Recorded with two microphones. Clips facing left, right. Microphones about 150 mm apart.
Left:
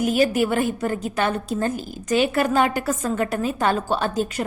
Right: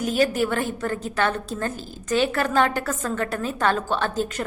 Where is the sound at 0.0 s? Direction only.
10° left (ahead or behind).